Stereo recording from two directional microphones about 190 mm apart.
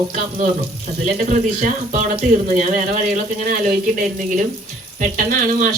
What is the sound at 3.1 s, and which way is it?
Speech, 45° right (ahead or behind).